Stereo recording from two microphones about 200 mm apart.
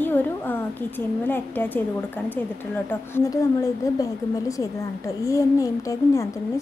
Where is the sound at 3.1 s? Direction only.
15° left (ahead or behind).